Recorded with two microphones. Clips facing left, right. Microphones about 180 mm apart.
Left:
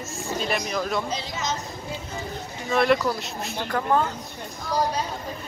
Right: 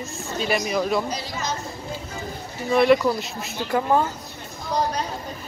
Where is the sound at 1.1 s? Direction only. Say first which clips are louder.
Even; 20° left (ahead or behind).